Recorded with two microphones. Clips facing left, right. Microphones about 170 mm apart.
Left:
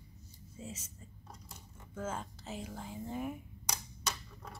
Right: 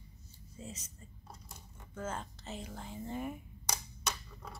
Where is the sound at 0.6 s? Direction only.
5° left (ahead or behind).